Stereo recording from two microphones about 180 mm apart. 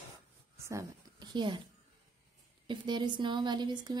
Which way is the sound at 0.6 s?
15° right (ahead or behind).